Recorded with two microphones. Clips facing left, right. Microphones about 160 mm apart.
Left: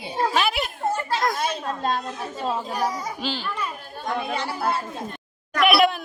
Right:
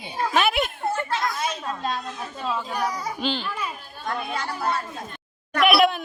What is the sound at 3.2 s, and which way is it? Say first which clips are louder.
Speech: right 5 dB; 5° left (ahead or behind).